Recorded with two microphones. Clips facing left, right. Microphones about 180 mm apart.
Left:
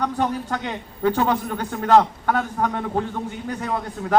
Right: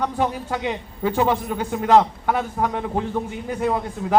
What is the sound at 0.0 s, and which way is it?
A man's voice, 10° right (ahead or behind).